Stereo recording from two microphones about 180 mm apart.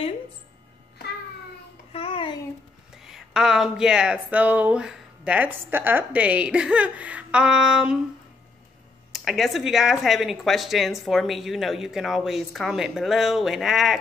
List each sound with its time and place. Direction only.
1.9 s a sound: 30° left (ahead or behind)
3.0 s speech: centre (ahead or behind)
9.1 s speech: centre (ahead or behind)